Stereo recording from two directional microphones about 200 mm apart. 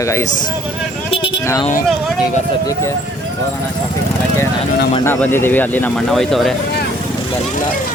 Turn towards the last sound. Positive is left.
turn(degrees=0)  # may be behind; listen again after turning